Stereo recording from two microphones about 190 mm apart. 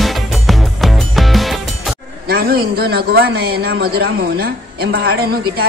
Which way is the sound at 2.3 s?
50° right (ahead or behind).